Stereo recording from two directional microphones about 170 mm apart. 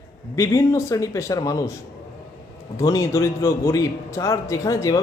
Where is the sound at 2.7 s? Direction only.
20° left (ahead or behind).